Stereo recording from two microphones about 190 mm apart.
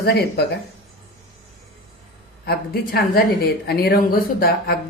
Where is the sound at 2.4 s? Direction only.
55° left (ahead or behind).